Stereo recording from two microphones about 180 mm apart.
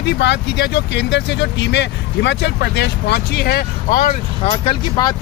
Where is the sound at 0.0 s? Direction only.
70° left (ahead or behind); by 4.2 s 50° left (ahead or behind).